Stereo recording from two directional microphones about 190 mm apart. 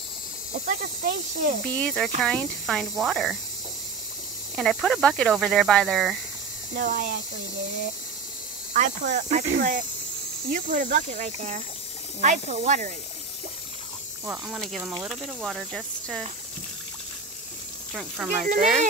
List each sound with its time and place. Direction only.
0.7 s speech: 45° right (ahead or behind)
1.7 s speech: 5° left (ahead or behind)
4.6 s speech: centre (ahead or behind)
6.7 s speech: 55° right (ahead or behind)
8.7 s speech: 40° right (ahead or behind)
14.2 s speech: 10° right (ahead or behind)
14.6 s speech: centre (ahead or behind)
17.9 s speech: 5° right (ahead or behind)
18.4 s speech: 45° right (ahead or behind)